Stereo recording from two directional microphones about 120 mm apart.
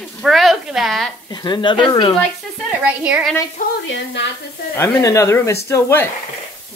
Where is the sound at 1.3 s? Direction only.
40° left (ahead or behind).